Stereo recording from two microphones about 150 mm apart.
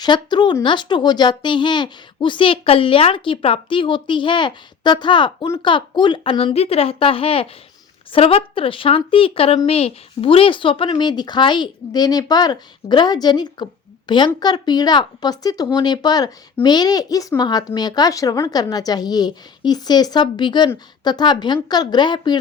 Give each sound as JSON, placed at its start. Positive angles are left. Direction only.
{"t": 0.0, "sound": "speech", "side_deg": 30}